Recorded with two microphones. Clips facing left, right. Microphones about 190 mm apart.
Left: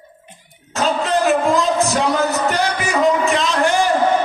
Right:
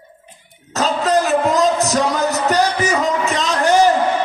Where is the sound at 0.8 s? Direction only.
40° right (ahead or behind).